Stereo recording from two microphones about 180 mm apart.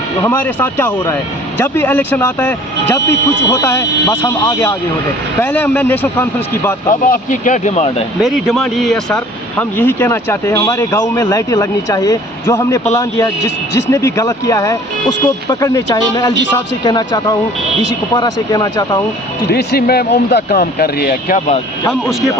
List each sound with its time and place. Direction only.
0.2 s speech: 10° left (ahead or behind)
7.0 s speech: 45° left (ahead or behind)
8.2 s speech: centre (ahead or behind); by 19.0 s 20° left (ahead or behind)
19.5 s speech: 65° left (ahead or behind)